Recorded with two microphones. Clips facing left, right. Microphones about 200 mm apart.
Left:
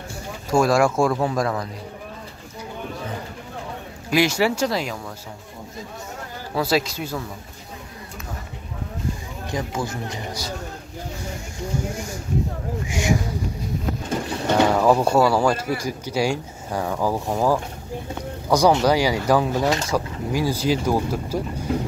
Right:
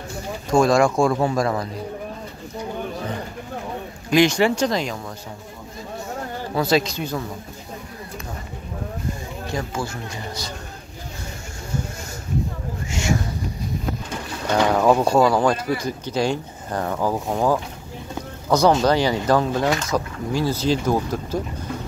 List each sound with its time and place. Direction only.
0.5 s speech: 5° left (ahead or behind)
4.1 s speech: 5° left (ahead or behind)
6.5 s speech: 5° left (ahead or behind)
9.5 s speech: 20° left (ahead or behind)
12.8 s a sound: 15° left (ahead or behind)
14.8 s speech: 5° left (ahead or behind)